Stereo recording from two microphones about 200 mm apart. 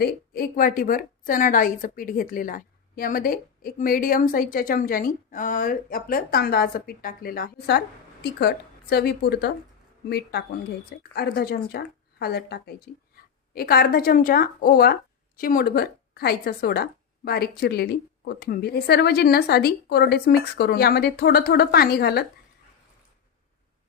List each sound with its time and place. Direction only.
0.0 s a woman's voice: 45° left (ahead or behind)